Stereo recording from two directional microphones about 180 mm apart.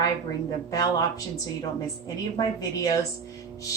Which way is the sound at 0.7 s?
20° left (ahead or behind).